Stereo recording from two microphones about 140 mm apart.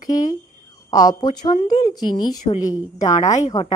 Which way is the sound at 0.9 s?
30° left (ahead or behind).